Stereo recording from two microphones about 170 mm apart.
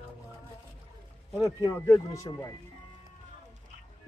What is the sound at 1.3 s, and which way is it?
Speech, 20° left (ahead or behind).